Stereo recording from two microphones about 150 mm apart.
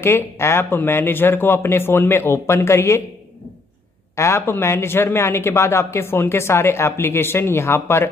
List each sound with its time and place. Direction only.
0.0 s speech: 15° left (ahead or behind)
4.2 s speech: 15° left (ahead or behind)